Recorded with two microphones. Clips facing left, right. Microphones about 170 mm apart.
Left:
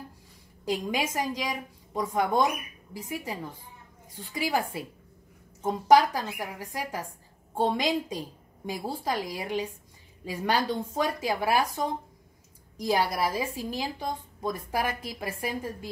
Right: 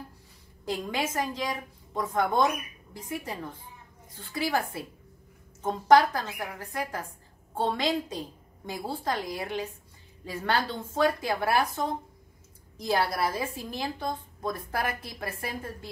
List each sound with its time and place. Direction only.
0.7 s a woman's voice: 10° left (ahead or behind)
12.8 s a woman's voice: 15° left (ahead or behind)